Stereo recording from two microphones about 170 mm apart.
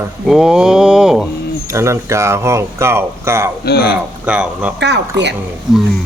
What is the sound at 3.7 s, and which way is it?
Music, 70° left (ahead or behind).